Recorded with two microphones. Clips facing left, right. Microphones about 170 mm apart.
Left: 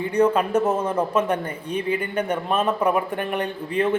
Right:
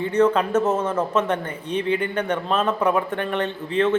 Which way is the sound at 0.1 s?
10° left (ahead or behind).